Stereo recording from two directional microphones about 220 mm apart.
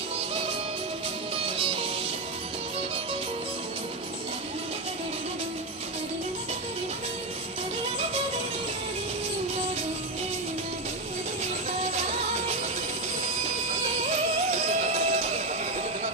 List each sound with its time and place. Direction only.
14.5 s music: 30° right (ahead or behind)